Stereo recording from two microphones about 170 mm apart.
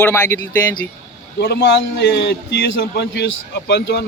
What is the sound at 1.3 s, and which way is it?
A man's voice, 70° left (ahead or behind).